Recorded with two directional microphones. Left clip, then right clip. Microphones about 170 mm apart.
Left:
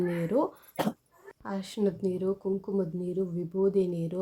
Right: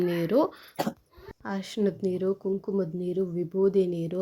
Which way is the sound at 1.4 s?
15° right (ahead or behind).